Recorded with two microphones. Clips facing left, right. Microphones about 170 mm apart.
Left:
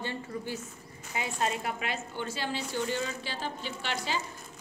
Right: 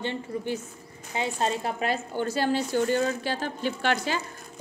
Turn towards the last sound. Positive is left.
turn(degrees=-50)  # may be behind; listen again after turning